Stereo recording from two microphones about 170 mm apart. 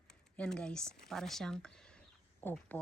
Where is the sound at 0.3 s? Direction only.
5° left (ahead or behind).